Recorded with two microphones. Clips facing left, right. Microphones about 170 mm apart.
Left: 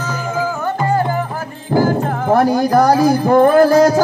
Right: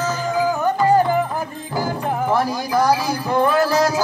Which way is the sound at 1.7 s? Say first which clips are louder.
Left 9 dB; 45° left (ahead or behind).